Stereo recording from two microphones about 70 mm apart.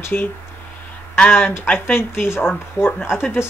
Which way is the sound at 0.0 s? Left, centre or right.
Left.